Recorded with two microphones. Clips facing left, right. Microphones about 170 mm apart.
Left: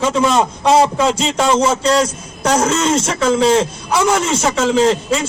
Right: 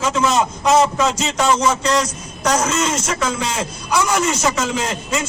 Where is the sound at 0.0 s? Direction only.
30° left (ahead or behind).